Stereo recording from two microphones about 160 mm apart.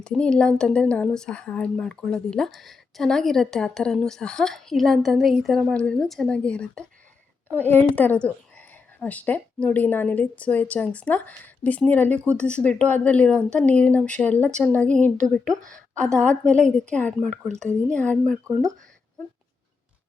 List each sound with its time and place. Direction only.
0.0 s a woman's voice: 5° left (ahead or behind)